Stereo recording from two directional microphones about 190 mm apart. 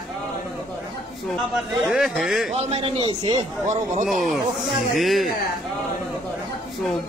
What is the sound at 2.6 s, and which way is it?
Speech, 30° right (ahead or behind).